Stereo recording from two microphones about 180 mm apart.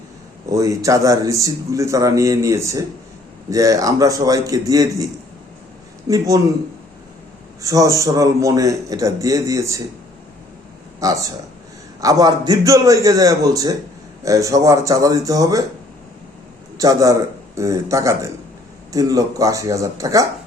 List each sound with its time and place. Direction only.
0.5 s a man's voice: 15° right (ahead or behind)
6.1 s a man's voice: 20° right (ahead or behind)
7.6 s a man's voice: 20° right (ahead or behind)
11.0 s a man's voice: 20° right (ahead or behind)
16.7 s a man's voice: 20° right (ahead or behind)